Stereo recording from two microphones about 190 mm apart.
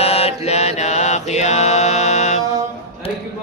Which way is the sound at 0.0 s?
30° left (ahead or behind).